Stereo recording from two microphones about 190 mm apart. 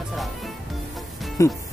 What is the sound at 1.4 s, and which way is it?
Speech, 15° left (ahead or behind).